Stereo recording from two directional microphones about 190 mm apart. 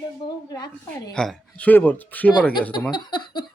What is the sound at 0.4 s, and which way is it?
Speech, 20° left (ahead or behind).